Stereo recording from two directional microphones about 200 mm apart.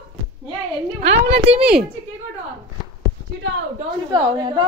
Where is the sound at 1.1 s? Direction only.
60° right (ahead or behind).